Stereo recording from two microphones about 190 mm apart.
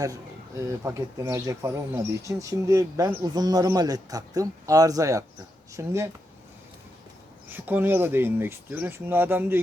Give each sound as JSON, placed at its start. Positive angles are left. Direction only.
{"t": 0.6, "sound": "speech", "side_deg": -15}
{"t": 7.4, "sound": "speech", "side_deg": -10}